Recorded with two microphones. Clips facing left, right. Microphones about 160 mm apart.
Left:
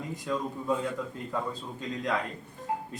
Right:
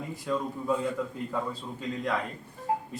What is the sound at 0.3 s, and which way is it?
Speech, 5° right (ahead or behind).